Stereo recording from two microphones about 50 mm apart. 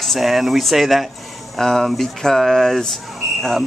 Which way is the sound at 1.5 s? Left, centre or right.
Centre.